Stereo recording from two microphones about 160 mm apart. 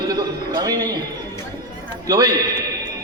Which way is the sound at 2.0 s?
25° right (ahead or behind).